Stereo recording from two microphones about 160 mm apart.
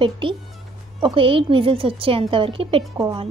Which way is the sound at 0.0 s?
30° right (ahead or behind).